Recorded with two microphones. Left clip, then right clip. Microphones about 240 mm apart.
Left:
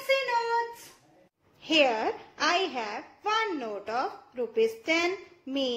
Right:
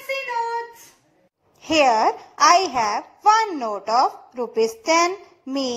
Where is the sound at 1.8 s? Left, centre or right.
Right.